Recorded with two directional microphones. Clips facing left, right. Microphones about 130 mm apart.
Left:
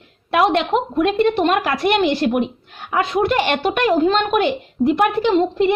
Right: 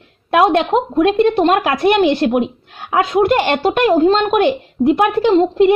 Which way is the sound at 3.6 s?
35° right (ahead or behind).